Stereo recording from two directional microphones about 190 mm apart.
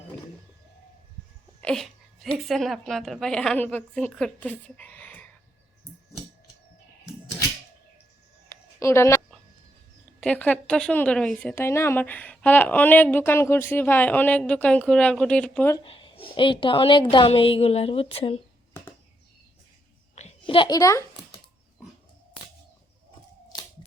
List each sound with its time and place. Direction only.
1.6 s a woman's voice: centre (ahead or behind)
8.4 s a sound: 15° left (ahead or behind)
10.2 s speech: 5° left (ahead or behind)
15.8 s a woman's voice: 25° left (ahead or behind)
20.1 s a child's voice: 30° left (ahead or behind)